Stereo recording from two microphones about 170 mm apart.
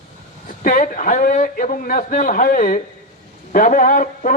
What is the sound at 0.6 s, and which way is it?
A man's voice, 50° left (ahead or behind).